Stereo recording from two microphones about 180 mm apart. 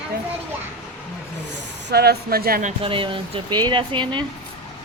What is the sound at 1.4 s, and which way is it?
Speech, 65° right (ahead or behind).